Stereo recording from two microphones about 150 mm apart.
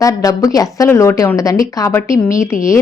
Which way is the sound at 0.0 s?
20° left (ahead or behind).